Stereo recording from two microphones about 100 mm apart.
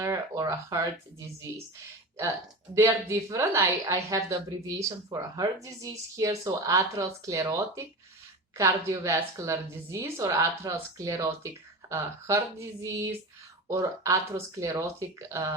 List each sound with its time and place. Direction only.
0.0 s a woman's voice: 35° right (ahead or behind)
2.7 s a woman's voice: 25° right (ahead or behind)